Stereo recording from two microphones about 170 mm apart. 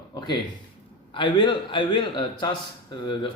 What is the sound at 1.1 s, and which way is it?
Speech, 30° left (ahead or behind).